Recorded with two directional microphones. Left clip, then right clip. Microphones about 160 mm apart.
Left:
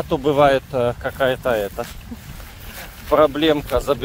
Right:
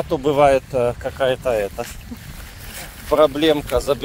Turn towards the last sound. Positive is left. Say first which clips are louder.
# even
turn(degrees=-25)  # may be behind; listen again after turning